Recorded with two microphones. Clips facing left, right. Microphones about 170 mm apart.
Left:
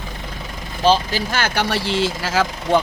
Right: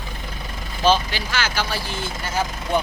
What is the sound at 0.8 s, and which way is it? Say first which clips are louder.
Speech: left 2 dB; 35° left (ahead or behind).